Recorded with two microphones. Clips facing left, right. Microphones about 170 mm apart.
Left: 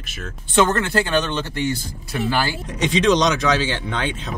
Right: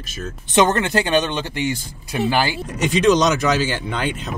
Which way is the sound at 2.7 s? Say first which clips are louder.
Right 1 dB; 5° right (ahead or behind).